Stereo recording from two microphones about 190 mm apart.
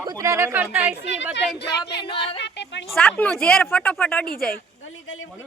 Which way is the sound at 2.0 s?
30° left (ahead or behind).